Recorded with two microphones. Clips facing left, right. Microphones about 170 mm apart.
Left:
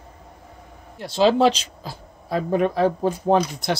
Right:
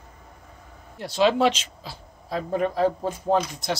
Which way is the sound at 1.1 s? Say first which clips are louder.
Left 3 dB; 30° left (ahead or behind).